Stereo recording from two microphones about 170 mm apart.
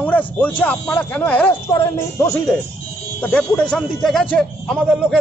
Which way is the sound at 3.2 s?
5° left (ahead or behind).